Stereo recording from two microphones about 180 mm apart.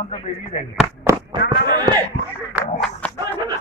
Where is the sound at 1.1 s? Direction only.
15° right (ahead or behind).